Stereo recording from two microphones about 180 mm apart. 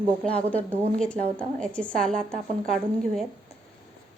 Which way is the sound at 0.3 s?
10° left (ahead or behind).